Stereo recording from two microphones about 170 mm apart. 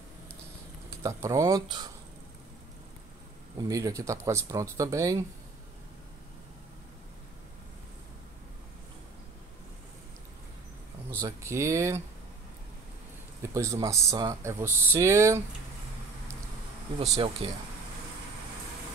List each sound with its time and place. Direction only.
1.0 s speech: 20° right (ahead or behind)
3.5 s speech: 20° right (ahead or behind)
11.1 s speech: 20° right (ahead or behind)
13.5 s speech: 20° right (ahead or behind)
17.0 s speech: 35° right (ahead or behind)